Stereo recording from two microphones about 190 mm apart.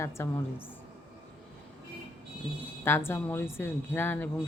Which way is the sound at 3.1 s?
10° left (ahead or behind).